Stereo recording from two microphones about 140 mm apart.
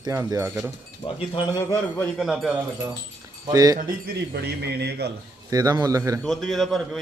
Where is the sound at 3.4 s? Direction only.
25° right (ahead or behind).